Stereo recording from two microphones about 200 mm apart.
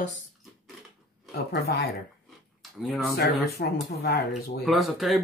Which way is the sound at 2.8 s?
Centre (ahead or behind).